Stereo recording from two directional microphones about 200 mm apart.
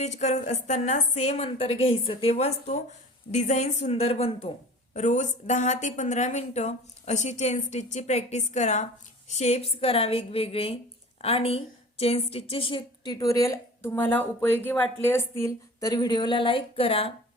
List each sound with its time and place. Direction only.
0.0 s a woman's voice: 35° left (ahead or behind)